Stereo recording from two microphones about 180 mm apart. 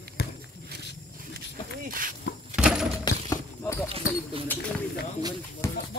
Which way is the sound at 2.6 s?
5° right (ahead or behind).